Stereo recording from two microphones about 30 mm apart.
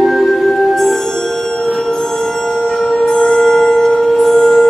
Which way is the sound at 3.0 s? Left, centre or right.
Left.